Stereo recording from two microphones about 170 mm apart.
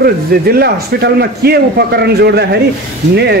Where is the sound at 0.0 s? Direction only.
65° right (ahead or behind).